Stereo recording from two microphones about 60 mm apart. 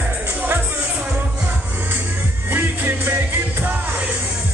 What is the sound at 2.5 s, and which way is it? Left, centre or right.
Music, right.